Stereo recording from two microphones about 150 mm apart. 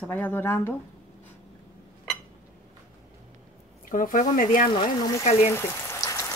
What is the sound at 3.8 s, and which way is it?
Speech, 65° left (ahead or behind).